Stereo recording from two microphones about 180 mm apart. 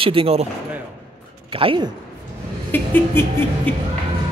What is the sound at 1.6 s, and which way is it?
Speech, 30° right (ahead or behind).